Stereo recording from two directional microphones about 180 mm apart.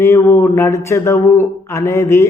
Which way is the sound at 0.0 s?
15° left (ahead or behind).